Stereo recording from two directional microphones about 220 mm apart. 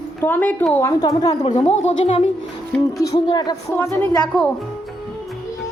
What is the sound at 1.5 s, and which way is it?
Speech, 30° left (ahead or behind).